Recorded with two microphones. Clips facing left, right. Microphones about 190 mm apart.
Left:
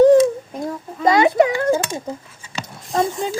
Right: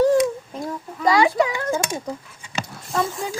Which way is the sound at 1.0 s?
20° left (ahead or behind).